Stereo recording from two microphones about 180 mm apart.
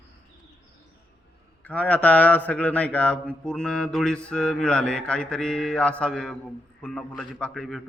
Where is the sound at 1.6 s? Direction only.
5° left (ahead or behind).